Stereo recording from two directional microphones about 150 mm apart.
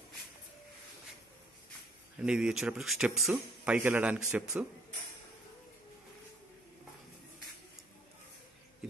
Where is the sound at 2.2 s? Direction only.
5° right (ahead or behind).